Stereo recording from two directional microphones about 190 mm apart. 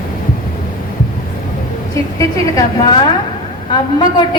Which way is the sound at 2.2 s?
20° left (ahead or behind).